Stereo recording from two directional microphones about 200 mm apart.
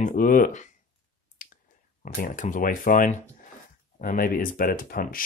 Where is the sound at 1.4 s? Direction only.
45° left (ahead or behind).